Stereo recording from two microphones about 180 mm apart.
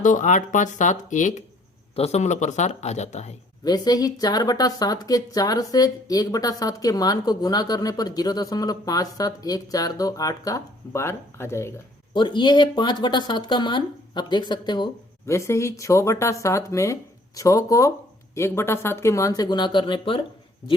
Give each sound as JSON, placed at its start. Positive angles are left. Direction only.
{"t": 0.0, "sound": "speech", "side_deg": 45}
{"t": 3.6, "sound": "a woman's voice", "side_deg": 20}
{"t": 12.1, "sound": "a woman's voice", "side_deg": 25}